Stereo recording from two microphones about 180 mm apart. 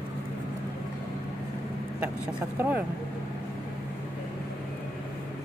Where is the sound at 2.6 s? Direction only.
10° right (ahead or behind).